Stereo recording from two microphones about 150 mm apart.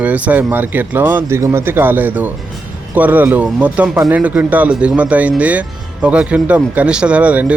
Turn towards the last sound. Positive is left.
turn(degrees=-10)  # may be behind; listen again after turning